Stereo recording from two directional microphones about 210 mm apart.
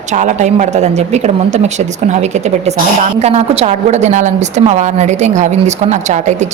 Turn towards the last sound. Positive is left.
turn(degrees=-35)  # may be behind; listen again after turning